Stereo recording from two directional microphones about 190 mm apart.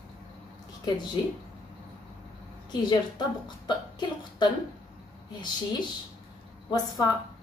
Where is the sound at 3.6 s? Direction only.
20° left (ahead or behind).